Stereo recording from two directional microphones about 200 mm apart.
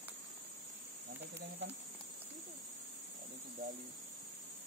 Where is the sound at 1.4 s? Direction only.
60° right (ahead or behind).